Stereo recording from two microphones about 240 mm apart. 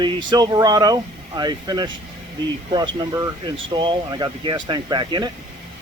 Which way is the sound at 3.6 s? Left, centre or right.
Centre.